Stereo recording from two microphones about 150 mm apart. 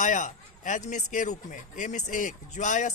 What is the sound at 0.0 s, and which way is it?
Speech, 60° left (ahead or behind).